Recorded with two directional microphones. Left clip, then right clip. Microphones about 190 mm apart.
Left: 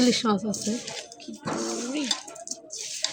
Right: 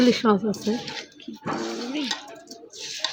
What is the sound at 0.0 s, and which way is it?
Speech, 20° right (ahead or behind).